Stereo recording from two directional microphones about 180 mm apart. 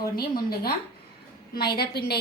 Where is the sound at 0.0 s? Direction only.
55° left (ahead or behind).